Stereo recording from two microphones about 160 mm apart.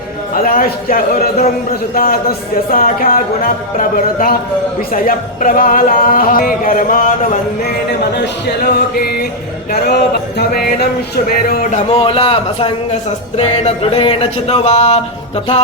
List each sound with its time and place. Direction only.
0.3 s speech: 60° left (ahead or behind)
8.1 s music: 90° left; by 9.2 s 70° left (ahead or behind)
10.3 s speech: 75° left (ahead or behind)
11.9 s speech: 35° left (ahead or behind)